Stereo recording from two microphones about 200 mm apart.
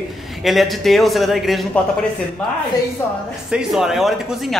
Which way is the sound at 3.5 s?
Centre (ahead or behind).